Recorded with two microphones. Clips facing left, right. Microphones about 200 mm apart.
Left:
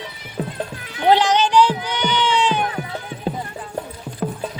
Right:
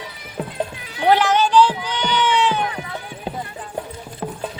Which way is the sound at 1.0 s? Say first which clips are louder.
Even; 20° left (ahead or behind).